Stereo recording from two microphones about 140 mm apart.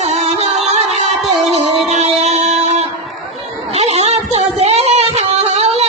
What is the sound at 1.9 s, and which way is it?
Music, 55° right (ahead or behind).